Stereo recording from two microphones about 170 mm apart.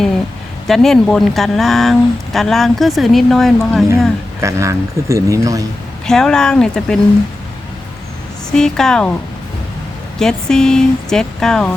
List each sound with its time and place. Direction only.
0.7 s speech: centre (ahead or behind)
4.4 s a man's voice: 15° right (ahead or behind)
6.1 s speech: 5° left (ahead or behind)
8.5 s speech: 5° left (ahead or behind)
10.2 s speech: 5° left (ahead or behind)